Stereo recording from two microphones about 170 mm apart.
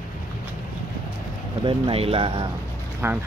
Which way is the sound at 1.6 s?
35° right (ahead or behind).